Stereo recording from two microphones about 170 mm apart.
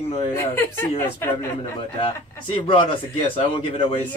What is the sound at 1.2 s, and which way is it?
Speech, 15° left (ahead or behind).